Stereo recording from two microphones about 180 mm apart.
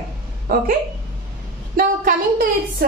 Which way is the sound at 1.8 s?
55° right (ahead or behind).